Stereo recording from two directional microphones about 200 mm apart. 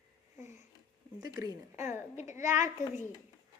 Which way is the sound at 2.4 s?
35° left (ahead or behind).